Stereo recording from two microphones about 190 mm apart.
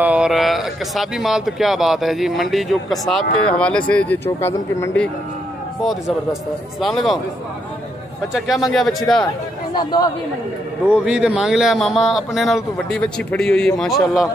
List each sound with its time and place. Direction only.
0.0 s speech: 5° right (ahead or behind); by 5.1 s 10° left (ahead or behind)
6.8 s speech: centre (ahead or behind)
8.3 s speech: centre (ahead or behind)
9.8 s speech: 20° left (ahead or behind)
10.9 s speech: 5° right (ahead or behind)